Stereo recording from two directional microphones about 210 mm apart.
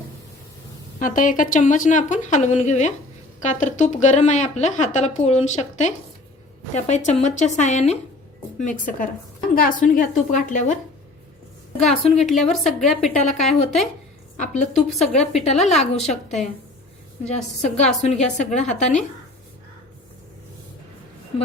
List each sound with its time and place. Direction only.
0.9 s speech: 40° left (ahead or behind)
11.9 s speech: 30° left (ahead or behind)
12.3 s a woman's voice: centre (ahead or behind)
12.6 s speech: 35° left (ahead or behind)